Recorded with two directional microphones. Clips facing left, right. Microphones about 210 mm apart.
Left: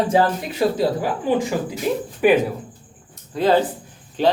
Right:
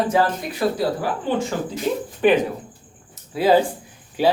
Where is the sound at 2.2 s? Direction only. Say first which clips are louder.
Left 1 dB; 5° left (ahead or behind).